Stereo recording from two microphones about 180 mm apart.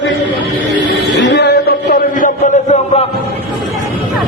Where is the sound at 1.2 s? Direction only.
70° left (ahead or behind); by 3.0 s 40° left (ahead or behind).